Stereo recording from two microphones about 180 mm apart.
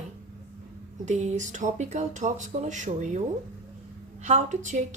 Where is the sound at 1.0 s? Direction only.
40° right (ahead or behind).